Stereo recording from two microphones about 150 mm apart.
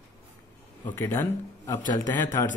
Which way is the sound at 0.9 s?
20° left (ahead or behind).